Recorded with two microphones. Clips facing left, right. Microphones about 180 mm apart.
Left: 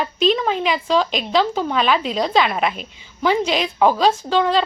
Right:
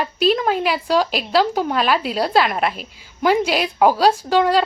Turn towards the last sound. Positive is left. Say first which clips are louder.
# right 2 dB
turn(degrees=-10)  # may be behind; listen again after turning